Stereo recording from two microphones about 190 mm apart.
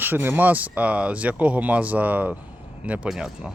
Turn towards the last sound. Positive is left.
turn(degrees=-5)  # may be behind; listen again after turning